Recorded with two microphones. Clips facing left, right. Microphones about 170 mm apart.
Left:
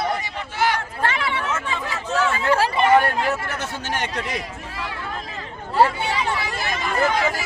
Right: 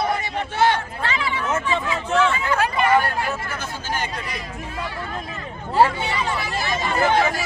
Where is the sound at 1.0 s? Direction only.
65° left (ahead or behind).